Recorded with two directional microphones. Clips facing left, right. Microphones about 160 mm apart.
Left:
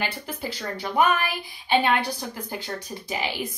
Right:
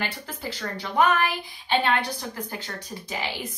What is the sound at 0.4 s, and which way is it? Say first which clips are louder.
Speech: even; 10° left (ahead or behind).